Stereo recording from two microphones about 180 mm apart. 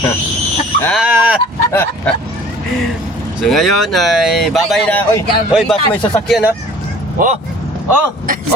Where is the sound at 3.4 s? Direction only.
Centre (ahead or behind).